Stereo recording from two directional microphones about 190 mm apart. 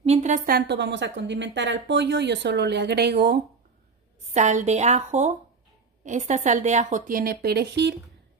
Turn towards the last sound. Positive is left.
turn(degrees=-60)  # may be behind; listen again after turning